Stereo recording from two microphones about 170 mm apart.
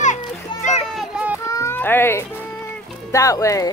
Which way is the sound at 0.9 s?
5° right (ahead or behind).